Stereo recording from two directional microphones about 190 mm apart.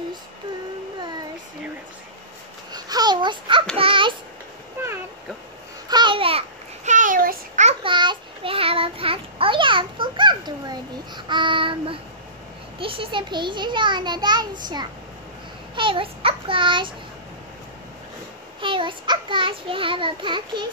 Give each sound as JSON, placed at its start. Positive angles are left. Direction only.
{"t": 2.7, "sound": "babbling", "side_deg": -20}
{"t": 4.8, "sound": "a sound", "side_deg": -10}
{"t": 5.9, "sound": "babbling", "side_deg": -25}
{"t": 7.8, "sound": "child singing", "side_deg": -25}
{"t": 12.7, "sound": "a sound", "side_deg": -30}
{"t": 15.7, "sound": "child singing", "side_deg": -25}
{"t": 18.6, "sound": "child singing", "side_deg": -25}